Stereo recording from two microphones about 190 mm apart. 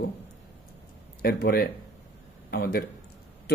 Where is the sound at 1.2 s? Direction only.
55° left (ahead or behind).